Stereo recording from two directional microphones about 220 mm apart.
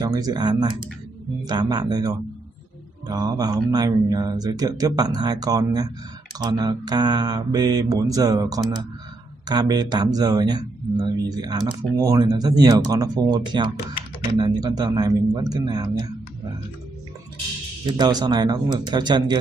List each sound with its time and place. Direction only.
0.0 s speech: 20° right (ahead or behind)
17.9 s speech: 20° right (ahead or behind)